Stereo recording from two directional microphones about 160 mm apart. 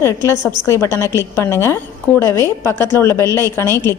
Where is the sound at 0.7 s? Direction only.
15° left (ahead or behind).